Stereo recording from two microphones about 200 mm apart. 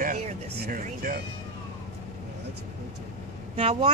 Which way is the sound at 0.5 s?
55° right (ahead or behind).